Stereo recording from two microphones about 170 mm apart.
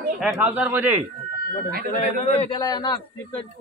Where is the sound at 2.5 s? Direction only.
25° left (ahead or behind).